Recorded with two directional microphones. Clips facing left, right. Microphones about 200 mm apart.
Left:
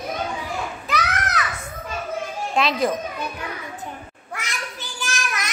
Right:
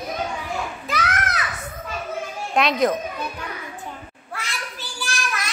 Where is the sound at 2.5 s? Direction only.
Centre (ahead or behind).